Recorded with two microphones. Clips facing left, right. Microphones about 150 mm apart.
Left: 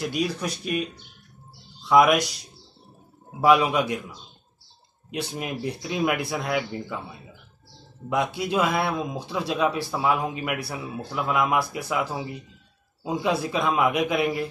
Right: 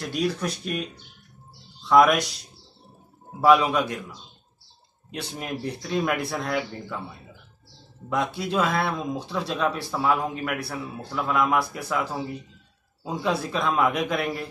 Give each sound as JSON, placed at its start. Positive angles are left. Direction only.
{"t": 0.0, "sound": "speech", "side_deg": 5}
{"t": 1.9, "sound": "speech", "side_deg": 10}
{"t": 3.3, "sound": "speech", "side_deg": 10}
{"t": 5.1, "sound": "speech", "side_deg": 10}
{"t": 8.1, "sound": "speech", "side_deg": 10}